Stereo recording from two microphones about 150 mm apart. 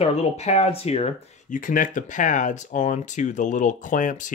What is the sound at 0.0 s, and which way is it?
Speech, 45° left (ahead or behind).